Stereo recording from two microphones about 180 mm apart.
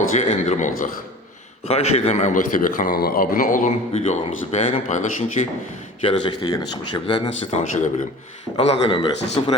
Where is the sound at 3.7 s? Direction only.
35° left (ahead or behind).